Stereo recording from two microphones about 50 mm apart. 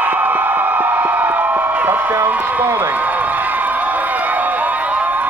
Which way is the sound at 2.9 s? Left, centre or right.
Right.